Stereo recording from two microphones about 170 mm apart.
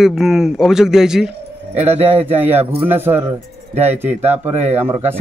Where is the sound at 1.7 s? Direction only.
40° right (ahead or behind).